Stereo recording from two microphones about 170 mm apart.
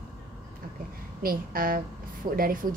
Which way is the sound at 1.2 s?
60° right (ahead or behind).